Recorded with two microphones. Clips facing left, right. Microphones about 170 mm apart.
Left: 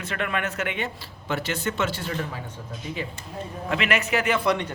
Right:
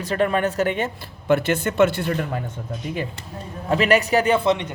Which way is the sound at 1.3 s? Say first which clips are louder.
Right 8 dB; 55° right (ahead or behind).